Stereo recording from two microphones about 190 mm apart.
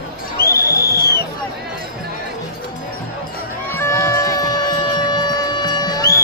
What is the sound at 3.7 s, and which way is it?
Music, 15° left (ahead or behind).